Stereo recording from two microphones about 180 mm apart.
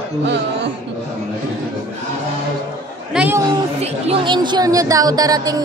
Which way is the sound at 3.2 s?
10° right (ahead or behind).